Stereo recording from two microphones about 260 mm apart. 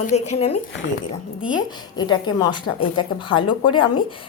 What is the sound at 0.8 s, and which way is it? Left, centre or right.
Speech, left.